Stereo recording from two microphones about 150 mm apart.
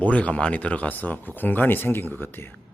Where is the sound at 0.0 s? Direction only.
10° left (ahead or behind).